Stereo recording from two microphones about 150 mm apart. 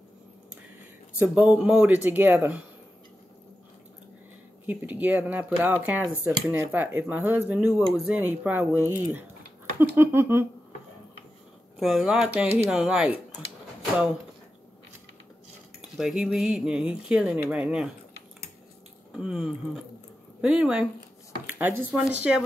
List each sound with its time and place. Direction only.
1.2 s speech: 10° right (ahead or behind)
4.6 s speech: 10° right (ahead or behind)
11.8 s speech: centre (ahead or behind)
16.0 s speech: 5° right (ahead or behind)
19.1 s speech: 5° right (ahead or behind)